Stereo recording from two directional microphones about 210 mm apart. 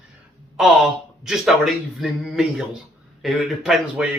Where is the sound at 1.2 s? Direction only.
Centre (ahead or behind).